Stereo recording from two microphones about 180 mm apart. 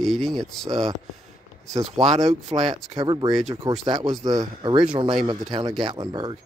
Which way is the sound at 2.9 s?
25° right (ahead or behind).